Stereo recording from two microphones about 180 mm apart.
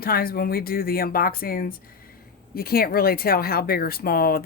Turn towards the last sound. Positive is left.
turn(degrees=55)  # may be behind; listen again after turning